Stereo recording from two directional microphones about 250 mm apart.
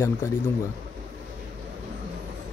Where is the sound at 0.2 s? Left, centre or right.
Centre.